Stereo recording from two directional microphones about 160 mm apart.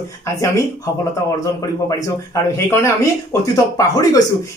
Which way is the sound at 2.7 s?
15° left (ahead or behind).